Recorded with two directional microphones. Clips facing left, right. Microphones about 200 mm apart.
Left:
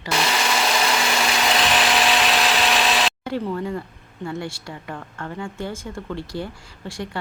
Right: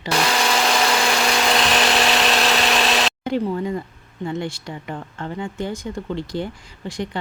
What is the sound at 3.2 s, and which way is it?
A woman's voice, 15° right (ahead or behind).